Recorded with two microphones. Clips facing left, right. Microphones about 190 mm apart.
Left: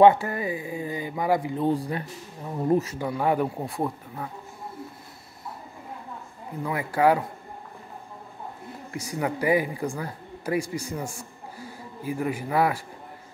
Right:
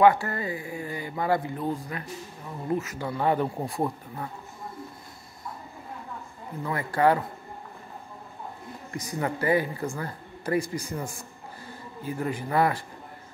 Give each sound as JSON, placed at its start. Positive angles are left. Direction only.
{"t": 0.0, "sound": "speech", "side_deg": 20}
{"t": 1.6, "sound": "speech", "side_deg": 30}
{"t": 3.0, "sound": "speech", "side_deg": 10}
{"t": 6.6, "sound": "speech", "side_deg": 10}
{"t": 8.9, "sound": "speech", "side_deg": 10}